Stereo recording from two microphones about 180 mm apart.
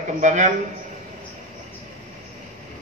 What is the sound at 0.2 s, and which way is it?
Speech, 40° right (ahead or behind).